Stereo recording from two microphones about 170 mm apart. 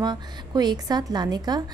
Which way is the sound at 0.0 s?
25° right (ahead or behind).